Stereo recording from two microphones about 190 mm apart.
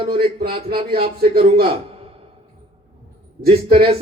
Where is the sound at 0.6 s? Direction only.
55° right (ahead or behind).